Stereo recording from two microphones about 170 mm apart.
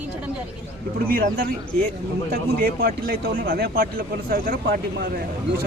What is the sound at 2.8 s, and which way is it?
Speech, 65° right (ahead or behind).